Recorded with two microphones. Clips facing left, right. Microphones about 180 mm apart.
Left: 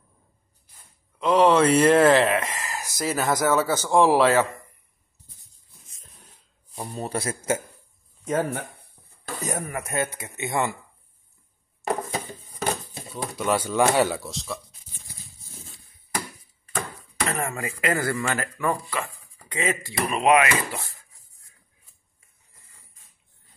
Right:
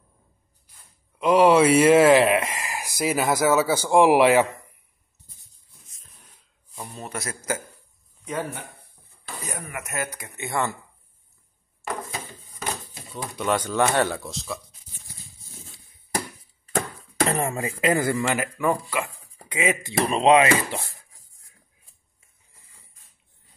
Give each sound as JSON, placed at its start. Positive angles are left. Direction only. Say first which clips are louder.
{"t": 1.2, "sound": "speech", "louder": "right 2 dB", "side_deg": -10}
{"t": 6.7, "sound": "a man's voice", "louder": "left 5 dB", "side_deg": 35}
{"t": 8.3, "sound": "speech", "louder": "left 5 dB", "side_deg": 45}
{"t": 13.1, "sound": "speech", "louder": "even", "side_deg": 5}
{"t": 17.5, "sound": "speech", "louder": "right 3 dB", "side_deg": -25}
{"t": 19.9, "sound": "speech", "louder": "right 2 dB", "side_deg": -25}